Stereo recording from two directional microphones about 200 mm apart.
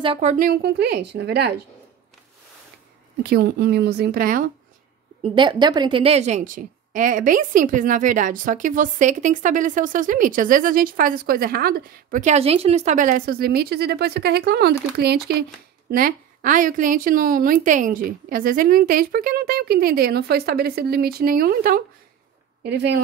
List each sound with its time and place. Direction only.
0.0 s a woman's voice: 30° right (ahead or behind); by 1.5 s 55° right (ahead or behind)
3.3 s a woman's voice: 50° right (ahead or behind)
5.2 s a woman's voice: 25° right (ahead or behind); by 21.8 s 45° right (ahead or behind)
22.6 s speech: 55° right (ahead or behind)